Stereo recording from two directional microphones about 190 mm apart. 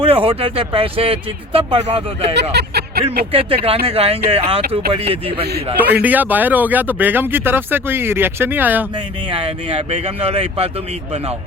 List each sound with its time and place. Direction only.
0.0 s speech: 30° right (ahead or behind)
2.3 s speech: 60° right (ahead or behind)
3.3 s speech: 30° right (ahead or behind)
5.8 s speech: 10° right (ahead or behind)
9.3 s speech: 30° right (ahead or behind)